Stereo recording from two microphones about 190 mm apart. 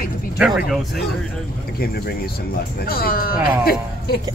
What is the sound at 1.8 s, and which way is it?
Speech, 55° left (ahead or behind).